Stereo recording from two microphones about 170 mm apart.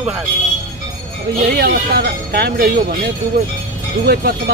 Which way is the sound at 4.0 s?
70° right (ahead or behind).